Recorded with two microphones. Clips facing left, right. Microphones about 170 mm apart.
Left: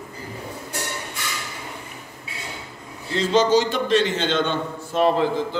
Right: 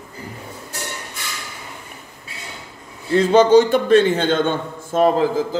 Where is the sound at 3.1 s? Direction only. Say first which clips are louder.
Right 6 dB; 55° right (ahead or behind).